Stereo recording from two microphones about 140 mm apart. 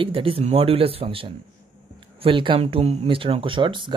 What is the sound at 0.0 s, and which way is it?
Speech, 40° right (ahead or behind).